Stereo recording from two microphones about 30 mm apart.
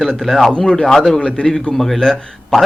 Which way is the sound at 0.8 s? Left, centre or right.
Centre.